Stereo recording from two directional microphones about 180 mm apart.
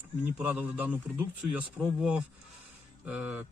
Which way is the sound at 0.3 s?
10° right (ahead or behind).